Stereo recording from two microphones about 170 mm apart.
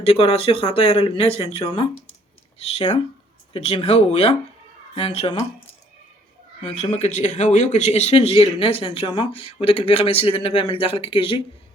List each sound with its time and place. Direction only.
0.0 s speech: 35° left (ahead or behind)
6.6 s speech: 35° left (ahead or behind)